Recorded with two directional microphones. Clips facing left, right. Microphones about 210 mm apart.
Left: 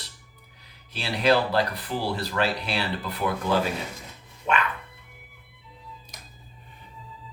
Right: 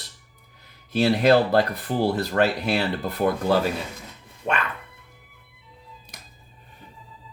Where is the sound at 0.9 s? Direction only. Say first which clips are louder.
Right 5 dB; 50° right (ahead or behind).